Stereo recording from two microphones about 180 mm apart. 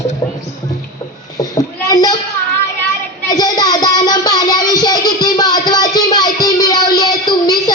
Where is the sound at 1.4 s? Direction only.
20° left (ahead or behind).